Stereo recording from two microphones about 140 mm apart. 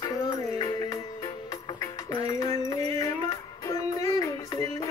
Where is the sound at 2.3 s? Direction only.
25° left (ahead or behind).